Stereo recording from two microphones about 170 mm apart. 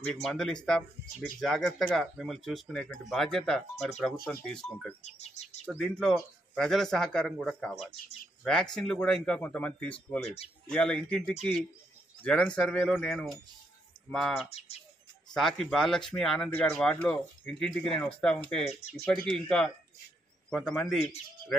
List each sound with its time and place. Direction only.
0.0 s speech: 5° left (ahead or behind)
5.0 s speech: 40° left (ahead or behind)
5.7 s speech: 5° left (ahead or behind)
10.2 s speech: 35° left (ahead or behind)
10.7 s speech: 5° left (ahead or behind)